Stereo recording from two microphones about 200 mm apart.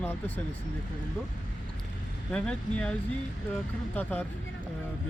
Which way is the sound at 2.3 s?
5° left (ahead or behind).